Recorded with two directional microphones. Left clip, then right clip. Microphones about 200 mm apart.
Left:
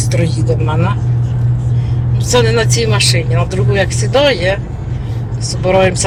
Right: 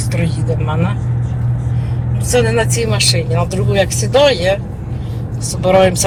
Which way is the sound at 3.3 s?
10° right (ahead or behind).